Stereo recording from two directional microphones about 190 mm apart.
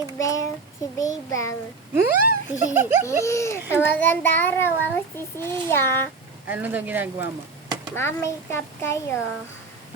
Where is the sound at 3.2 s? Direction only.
15° left (ahead or behind).